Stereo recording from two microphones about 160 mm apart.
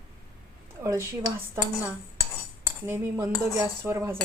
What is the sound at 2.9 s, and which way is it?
Speech, 15° right (ahead or behind).